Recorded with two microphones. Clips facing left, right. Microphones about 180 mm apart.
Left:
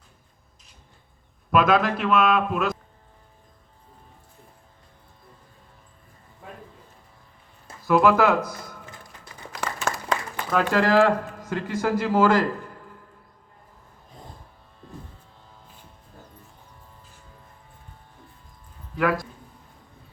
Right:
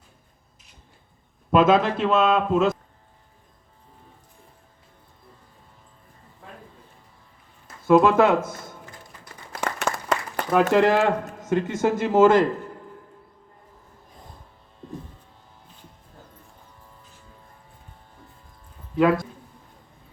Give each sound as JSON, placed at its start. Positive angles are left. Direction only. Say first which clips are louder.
{"t": 1.5, "sound": "a man's voice", "louder": "right 2 dB", "side_deg": -25}
{"t": 7.8, "sound": "speech", "louder": "right 2 dB", "side_deg": -25}
{"t": 9.6, "sound": "applause", "louder": "right 3 dB", "side_deg": -20}
{"t": 10.5, "sound": "a man's voice", "louder": "right 2 dB", "side_deg": -20}
{"t": 18.9, "sound": "a man's voice", "louder": "right 4 dB", "side_deg": -25}